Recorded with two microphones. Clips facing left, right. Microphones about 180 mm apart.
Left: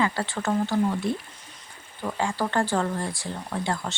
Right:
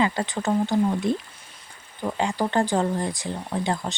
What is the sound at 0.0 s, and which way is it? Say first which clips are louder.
Speech: right 2 dB; 20° right (ahead or behind).